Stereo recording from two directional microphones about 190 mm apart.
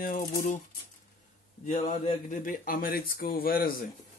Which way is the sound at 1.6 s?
40° left (ahead or behind).